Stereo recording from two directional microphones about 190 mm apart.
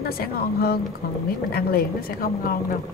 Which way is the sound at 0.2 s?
50° left (ahead or behind).